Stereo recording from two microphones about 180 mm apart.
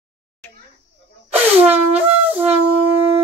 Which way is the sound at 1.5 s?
10° right (ahead or behind).